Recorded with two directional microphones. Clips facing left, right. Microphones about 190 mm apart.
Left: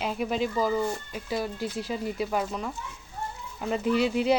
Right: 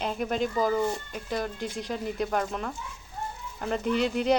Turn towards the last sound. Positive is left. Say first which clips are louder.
# left 1 dB
turn(degrees=5)  # may be behind; listen again after turning